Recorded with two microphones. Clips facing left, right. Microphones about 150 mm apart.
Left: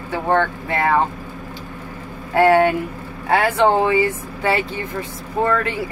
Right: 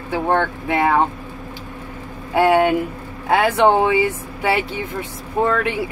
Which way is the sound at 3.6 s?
15° right (ahead or behind).